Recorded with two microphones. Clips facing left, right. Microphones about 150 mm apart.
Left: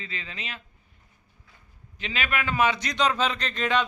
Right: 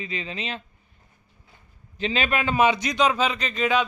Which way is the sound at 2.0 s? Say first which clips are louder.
Right 5 dB; 30° right (ahead or behind).